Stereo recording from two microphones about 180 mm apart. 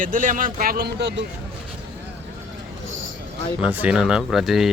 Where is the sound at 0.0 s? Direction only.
50° right (ahead or behind); by 1.2 s 75° right (ahead or behind).